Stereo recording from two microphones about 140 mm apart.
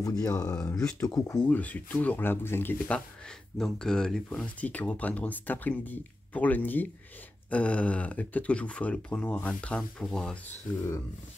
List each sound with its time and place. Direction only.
0.0 s speech: 25° left (ahead or behind)
3.5 s speech: 5° left (ahead or behind)